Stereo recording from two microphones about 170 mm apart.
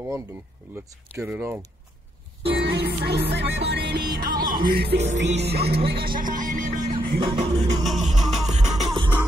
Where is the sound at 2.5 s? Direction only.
75° right (ahead or behind).